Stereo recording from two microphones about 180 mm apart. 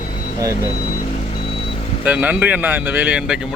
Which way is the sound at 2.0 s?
10° right (ahead or behind).